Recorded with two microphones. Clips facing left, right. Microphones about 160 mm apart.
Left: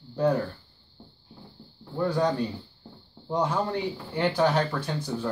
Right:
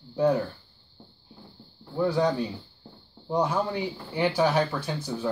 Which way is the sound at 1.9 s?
5° right (ahead or behind).